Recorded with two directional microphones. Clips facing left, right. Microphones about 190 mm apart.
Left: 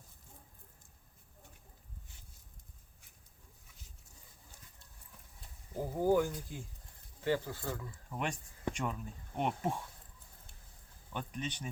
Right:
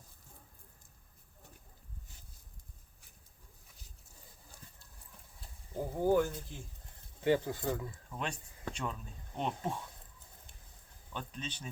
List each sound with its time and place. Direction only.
5.7 s speech: 10° left (ahead or behind)
7.2 s speech: 20° right (ahead or behind)
8.1 s speech: 15° left (ahead or behind)
11.1 s speech: 15° left (ahead or behind)